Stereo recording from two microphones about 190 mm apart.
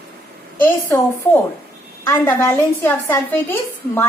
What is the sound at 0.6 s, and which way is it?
A woman's voice, 15° left (ahead or behind).